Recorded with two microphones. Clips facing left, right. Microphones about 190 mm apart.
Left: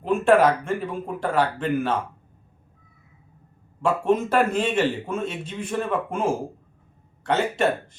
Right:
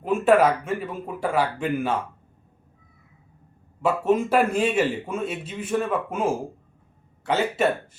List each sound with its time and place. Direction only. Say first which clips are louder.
0.0 s a man's voice: left 1 dB; 5° right (ahead or behind)
3.8 s a man's voice: even; 5° right (ahead or behind)
7.3 s a man's voice: even; 5° right (ahead or behind)